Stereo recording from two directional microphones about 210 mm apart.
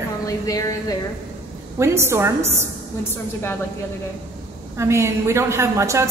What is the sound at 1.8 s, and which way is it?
Speech, 15° right (ahead or behind).